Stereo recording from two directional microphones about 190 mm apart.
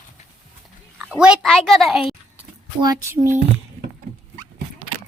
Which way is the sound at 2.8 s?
15° right (ahead or behind).